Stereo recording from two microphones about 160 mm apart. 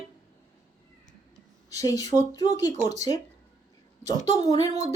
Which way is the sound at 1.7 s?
20° left (ahead or behind).